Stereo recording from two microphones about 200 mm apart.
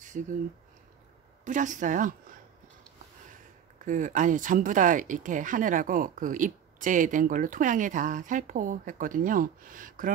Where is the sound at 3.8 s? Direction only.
40° right (ahead or behind).